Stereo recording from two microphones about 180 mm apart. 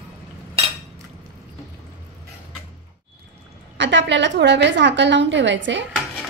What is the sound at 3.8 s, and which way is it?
A woman's voice, 80° right.